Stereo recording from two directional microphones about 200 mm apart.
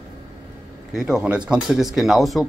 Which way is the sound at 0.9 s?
Centre (ahead or behind).